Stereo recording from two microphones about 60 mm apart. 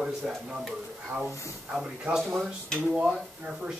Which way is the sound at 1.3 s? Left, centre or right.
Left.